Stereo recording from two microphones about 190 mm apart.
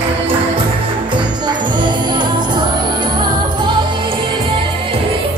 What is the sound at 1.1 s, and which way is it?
Music, 25° right (ahead or behind).